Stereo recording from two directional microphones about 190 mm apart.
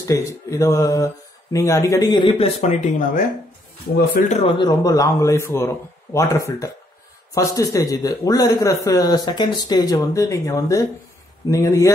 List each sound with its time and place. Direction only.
0.0 s speech: 15° left (ahead or behind); by 3.3 s 40° left (ahead or behind)
4.3 s speech: 30° left (ahead or behind)